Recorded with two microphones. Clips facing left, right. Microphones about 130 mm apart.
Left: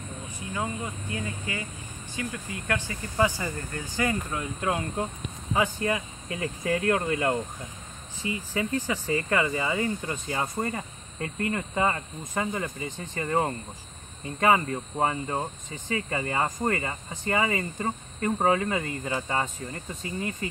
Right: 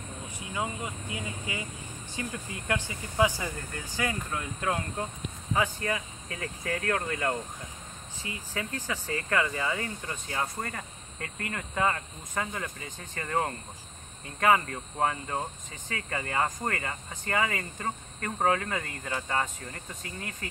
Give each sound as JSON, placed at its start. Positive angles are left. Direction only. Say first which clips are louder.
{"t": 0.5, "sound": "speech", "louder": "left 2 dB", "side_deg": -15}
{"t": 2.9, "sound": "speech", "louder": "left 1 dB", "side_deg": -10}
{"t": 8.8, "sound": "speech", "louder": "left 6 dB", "side_deg": 10}